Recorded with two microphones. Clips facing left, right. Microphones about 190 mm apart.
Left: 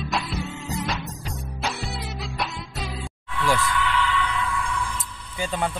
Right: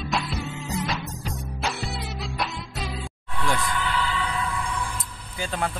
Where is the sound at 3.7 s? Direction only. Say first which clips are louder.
Left 2 dB; 35° right (ahead or behind).